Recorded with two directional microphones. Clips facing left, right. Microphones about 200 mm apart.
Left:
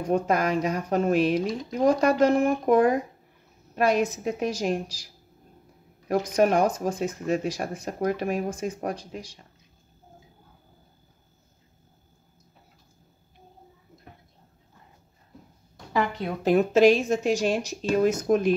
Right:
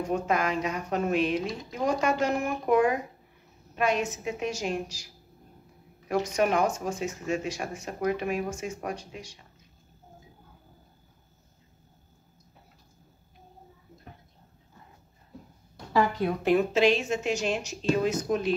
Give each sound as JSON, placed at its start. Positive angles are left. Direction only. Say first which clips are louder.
{"t": 0.1, "sound": "speech", "louder": "left 5 dB", "side_deg": 40}
{"t": 6.0, "sound": "speech", "louder": "left 4 dB", "side_deg": 40}
{"t": 16.4, "sound": "speech", "louder": "left 5 dB", "side_deg": 45}
{"t": 18.2, "sound": "speech", "louder": "left 6 dB", "side_deg": 50}